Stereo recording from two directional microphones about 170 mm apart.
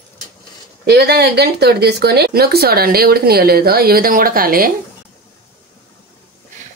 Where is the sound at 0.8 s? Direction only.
70° right (ahead or behind).